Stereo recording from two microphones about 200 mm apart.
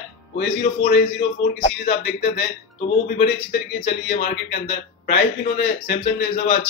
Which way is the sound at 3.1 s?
60° left (ahead or behind).